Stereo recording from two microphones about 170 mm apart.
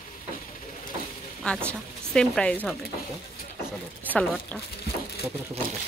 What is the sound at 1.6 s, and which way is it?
Speech, 5° left (ahead or behind).